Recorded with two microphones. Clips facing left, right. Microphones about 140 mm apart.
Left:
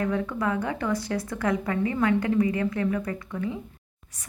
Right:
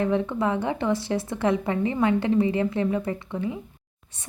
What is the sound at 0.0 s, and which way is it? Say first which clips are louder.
A woman's voice: right 3 dB; 25° right (ahead or behind).